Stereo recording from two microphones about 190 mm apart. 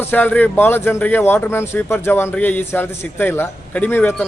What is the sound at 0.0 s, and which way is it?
Speech, 10° left (ahead or behind).